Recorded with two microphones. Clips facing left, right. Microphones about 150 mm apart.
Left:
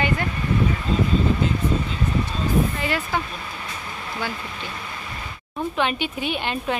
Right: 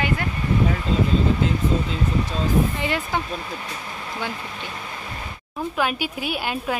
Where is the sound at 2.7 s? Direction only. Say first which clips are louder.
Even; 20° right (ahead or behind).